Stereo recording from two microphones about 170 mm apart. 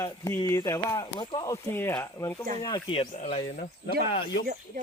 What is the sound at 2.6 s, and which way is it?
Speech, 30° left (ahead or behind).